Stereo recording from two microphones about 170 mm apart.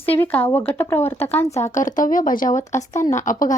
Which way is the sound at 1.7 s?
50° left (ahead or behind).